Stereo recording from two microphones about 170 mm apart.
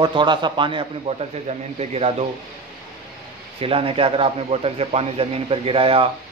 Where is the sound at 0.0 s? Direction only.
25° right (ahead or behind).